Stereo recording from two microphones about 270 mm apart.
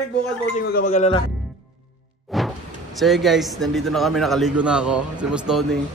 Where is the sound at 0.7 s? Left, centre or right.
Left.